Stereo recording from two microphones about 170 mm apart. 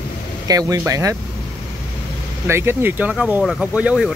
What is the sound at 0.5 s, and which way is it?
Speech, 20° right (ahead or behind).